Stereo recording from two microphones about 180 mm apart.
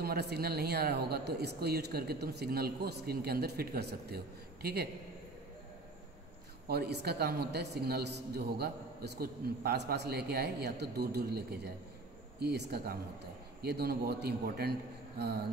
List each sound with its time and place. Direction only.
0.0 s a man's voice: 60° right (ahead or behind)
6.7 s a man's voice: 65° right (ahead or behind)